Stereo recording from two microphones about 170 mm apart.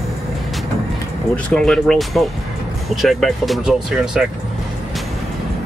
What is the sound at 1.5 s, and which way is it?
Speech, 5° left (ahead or behind).